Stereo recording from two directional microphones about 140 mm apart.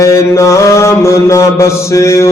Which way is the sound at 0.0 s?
20° left (ahead or behind).